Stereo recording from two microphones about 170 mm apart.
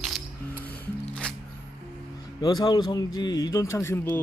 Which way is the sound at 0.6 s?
10° left (ahead or behind).